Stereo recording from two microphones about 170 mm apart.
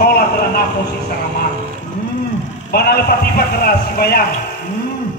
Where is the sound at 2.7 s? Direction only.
65° left (ahead or behind).